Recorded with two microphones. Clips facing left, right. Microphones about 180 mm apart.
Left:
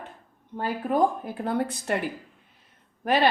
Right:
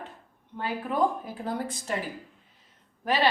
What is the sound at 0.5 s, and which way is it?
A woman's voice, 45° left (ahead or behind).